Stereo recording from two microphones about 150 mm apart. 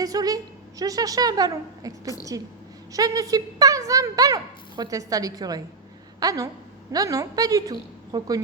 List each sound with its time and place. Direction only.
0.0 s a woman's voice: 25° right (ahead or behind)